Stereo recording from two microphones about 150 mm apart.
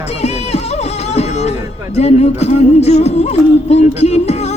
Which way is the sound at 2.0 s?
45° left (ahead or behind).